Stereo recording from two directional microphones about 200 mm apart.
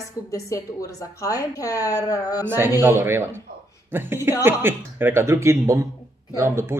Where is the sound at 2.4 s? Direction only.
10° right (ahead or behind).